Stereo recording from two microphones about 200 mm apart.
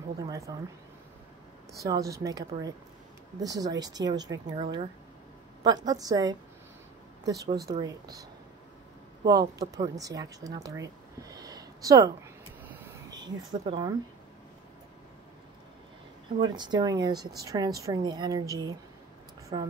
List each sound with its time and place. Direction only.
0.2 s speech: 20° right (ahead or behind)
1.8 s speech: 15° right (ahead or behind)
12.6 s a sound: 10° right (ahead or behind)
16.5 s speech: 20° right (ahead or behind)